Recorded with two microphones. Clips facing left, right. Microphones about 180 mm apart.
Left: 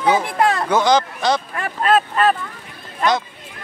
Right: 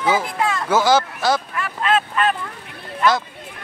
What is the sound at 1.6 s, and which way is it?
Speech, 45° left (ahead or behind).